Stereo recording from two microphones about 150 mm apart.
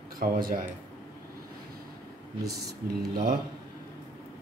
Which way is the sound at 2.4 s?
90° right.